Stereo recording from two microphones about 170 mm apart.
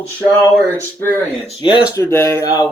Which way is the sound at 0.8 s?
10° left (ahead or behind).